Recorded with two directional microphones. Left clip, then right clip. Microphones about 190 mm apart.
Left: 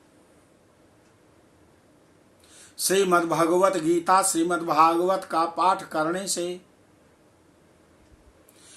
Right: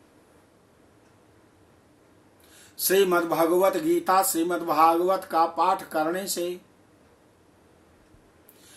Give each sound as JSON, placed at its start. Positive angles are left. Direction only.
{"t": 2.7, "sound": "a man's voice", "side_deg": 15}